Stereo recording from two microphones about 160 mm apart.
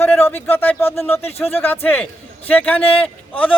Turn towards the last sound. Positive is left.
turn(degrees=35)  # may be behind; listen again after turning